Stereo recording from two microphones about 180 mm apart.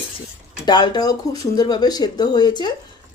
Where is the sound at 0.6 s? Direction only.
25° left (ahead or behind).